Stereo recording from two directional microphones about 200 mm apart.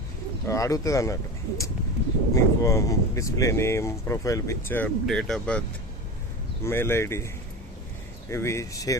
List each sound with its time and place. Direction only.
0.4 s speech: 15° left (ahead or behind)
6.7 s speech: 10° left (ahead or behind)
8.3 s speech: 15° left (ahead or behind)